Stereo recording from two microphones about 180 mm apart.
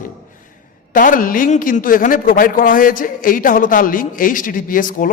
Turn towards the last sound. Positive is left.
turn(degrees=50)  # may be behind; listen again after turning